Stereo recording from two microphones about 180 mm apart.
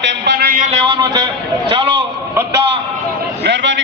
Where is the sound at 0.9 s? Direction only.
25° right (ahead or behind).